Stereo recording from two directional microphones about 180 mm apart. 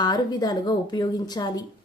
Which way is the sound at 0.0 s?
25° left (ahead or behind).